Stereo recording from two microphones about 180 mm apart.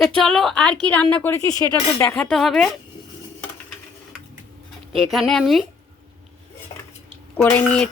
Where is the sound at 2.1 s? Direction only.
Centre (ahead or behind).